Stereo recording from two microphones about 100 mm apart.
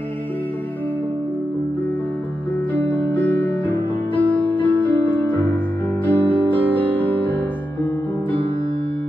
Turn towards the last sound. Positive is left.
turn(degrees=20)  # may be behind; listen again after turning